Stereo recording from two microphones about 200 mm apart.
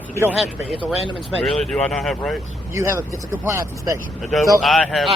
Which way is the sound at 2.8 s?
15° right (ahead or behind).